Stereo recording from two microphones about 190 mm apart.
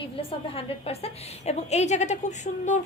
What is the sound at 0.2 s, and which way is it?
A woman's voice, 30° left (ahead or behind).